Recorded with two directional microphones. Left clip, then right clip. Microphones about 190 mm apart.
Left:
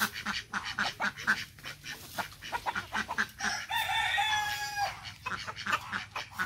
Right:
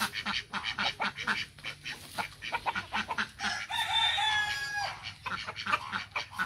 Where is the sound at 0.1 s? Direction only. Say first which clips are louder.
Right 1 dB; 35° right (ahead or behind).